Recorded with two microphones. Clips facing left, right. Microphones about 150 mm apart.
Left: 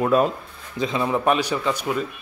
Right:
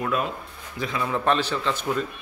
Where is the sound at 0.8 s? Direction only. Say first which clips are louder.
Left 4 dB; 20° left (ahead or behind).